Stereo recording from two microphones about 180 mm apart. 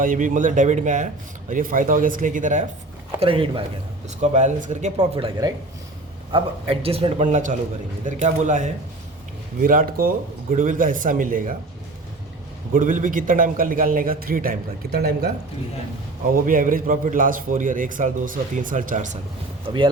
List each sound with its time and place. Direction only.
0.0 s a man's voice: 50° right (ahead or behind)
3.2 s speech: 30° right (ahead or behind)
4.2 s a man's voice: 40° right (ahead or behind)
12.7 s a man's voice: 50° right (ahead or behind)
16.3 s a man's voice: 50° right (ahead or behind)
19.6 s speech: 25° right (ahead or behind)